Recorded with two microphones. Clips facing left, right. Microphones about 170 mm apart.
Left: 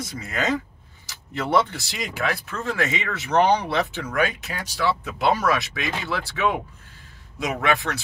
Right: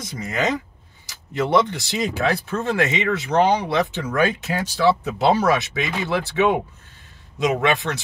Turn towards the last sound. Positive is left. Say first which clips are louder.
# right 3 dB
turn(degrees=-20)  # may be behind; listen again after turning